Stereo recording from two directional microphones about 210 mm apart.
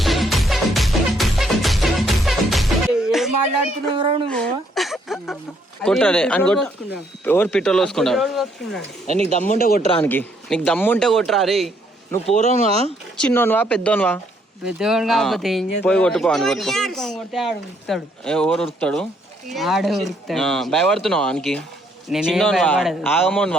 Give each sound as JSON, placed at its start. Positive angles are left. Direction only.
{"t": 0.0, "sound": "music", "side_deg": 0}
{"t": 3.9, "sound": "speech", "side_deg": -25}
{"t": 4.3, "sound": "a sound", "side_deg": 5}
{"t": 5.8, "sound": "speech", "side_deg": 5}
{"t": 9.5, "sound": "speech", "side_deg": 45}
{"t": 10.0, "sound": "speech", "side_deg": 10}
{"t": 12.3, "sound": "speech", "side_deg": 30}
{"t": 12.5, "sound": "speech", "side_deg": -30}
{"t": 13.1, "sound": "speech", "side_deg": 10}
{"t": 14.6, "sound": "speech", "side_deg": -5}